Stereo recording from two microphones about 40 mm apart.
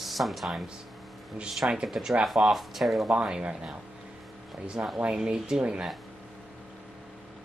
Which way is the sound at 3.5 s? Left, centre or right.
Right.